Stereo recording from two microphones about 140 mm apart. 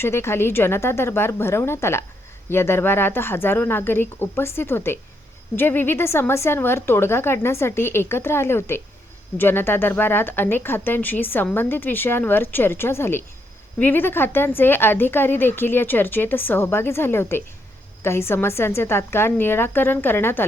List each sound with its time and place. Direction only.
0.0 s a woman's voice: 15° left (ahead or behind)